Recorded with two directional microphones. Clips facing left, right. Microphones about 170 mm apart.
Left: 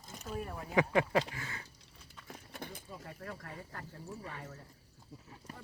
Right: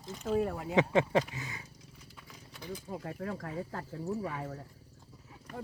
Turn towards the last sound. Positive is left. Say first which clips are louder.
# right 10 dB
turn(degrees=-75)  # may be behind; listen again after turning